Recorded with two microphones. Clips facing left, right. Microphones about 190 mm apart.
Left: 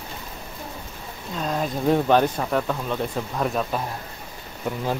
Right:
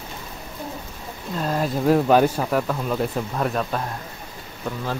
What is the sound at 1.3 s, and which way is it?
Speech, 5° right (ahead or behind).